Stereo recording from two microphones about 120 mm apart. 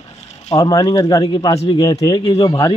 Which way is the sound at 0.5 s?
30° left (ahead or behind).